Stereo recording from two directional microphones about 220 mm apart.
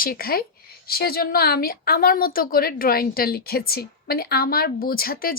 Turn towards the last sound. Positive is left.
turn(degrees=40)  # may be behind; listen again after turning